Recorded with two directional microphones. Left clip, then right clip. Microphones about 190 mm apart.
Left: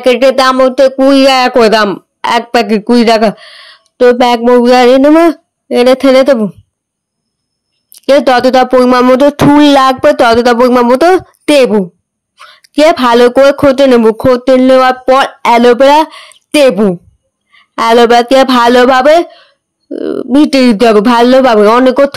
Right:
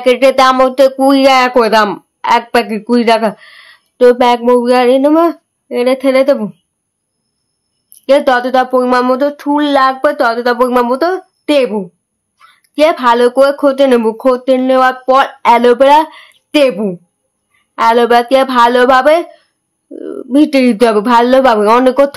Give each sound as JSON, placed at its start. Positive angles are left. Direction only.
{"t": 0.0, "sound": "speech", "side_deg": 20}
{"t": 7.9, "sound": "speech", "side_deg": 25}